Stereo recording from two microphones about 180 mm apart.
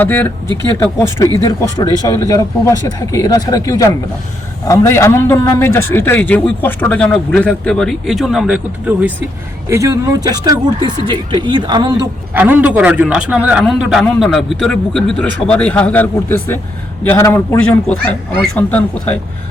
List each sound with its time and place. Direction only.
0.0 s a man's voice: 10° left (ahead or behind); by 9.1 s 5° right (ahead or behind)
9.6 s speech: 15° right (ahead or behind)
12.3 s a man's voice: 10° right (ahead or behind); by 19.2 s 10° left (ahead or behind)